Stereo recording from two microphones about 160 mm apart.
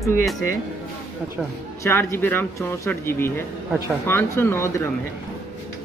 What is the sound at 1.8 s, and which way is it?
Speech, 15° left (ahead or behind).